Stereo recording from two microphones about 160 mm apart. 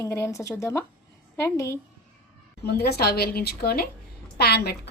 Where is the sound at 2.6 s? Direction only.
85° left.